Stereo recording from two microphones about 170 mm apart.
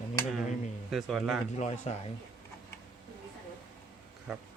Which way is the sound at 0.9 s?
Centre (ahead or behind).